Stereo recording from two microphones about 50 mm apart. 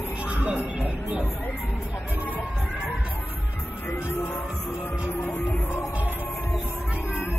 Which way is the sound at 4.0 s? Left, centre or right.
Left.